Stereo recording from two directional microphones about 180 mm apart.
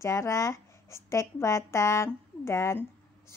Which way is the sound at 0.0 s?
15° left (ahead or behind).